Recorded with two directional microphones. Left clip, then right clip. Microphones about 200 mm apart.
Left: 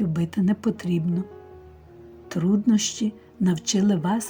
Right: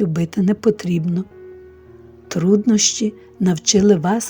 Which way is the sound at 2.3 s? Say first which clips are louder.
Right 7 dB; 45° right (ahead or behind).